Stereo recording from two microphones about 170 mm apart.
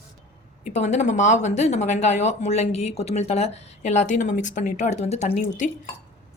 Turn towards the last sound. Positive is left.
turn(degrees=50)  # may be behind; listen again after turning